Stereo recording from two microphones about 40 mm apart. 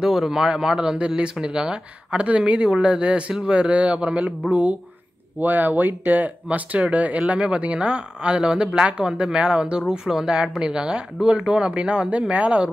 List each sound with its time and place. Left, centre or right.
0.2 s a man's voice: centre
2.0 s speech: right
5.4 s speech: right
7.2 s speech: right